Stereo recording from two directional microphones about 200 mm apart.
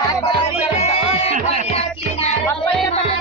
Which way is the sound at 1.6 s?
30° left (ahead or behind).